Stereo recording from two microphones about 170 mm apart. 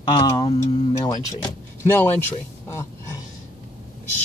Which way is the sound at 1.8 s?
15° left (ahead or behind).